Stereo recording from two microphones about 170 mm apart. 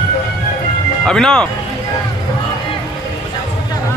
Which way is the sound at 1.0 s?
5° left (ahead or behind).